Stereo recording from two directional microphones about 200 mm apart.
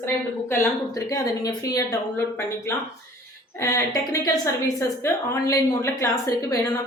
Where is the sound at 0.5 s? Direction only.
15° left (ahead or behind).